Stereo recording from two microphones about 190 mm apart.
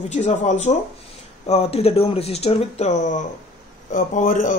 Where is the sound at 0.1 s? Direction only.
40° left (ahead or behind).